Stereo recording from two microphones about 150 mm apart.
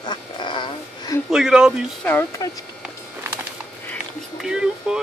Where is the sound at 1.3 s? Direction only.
5° right (ahead or behind).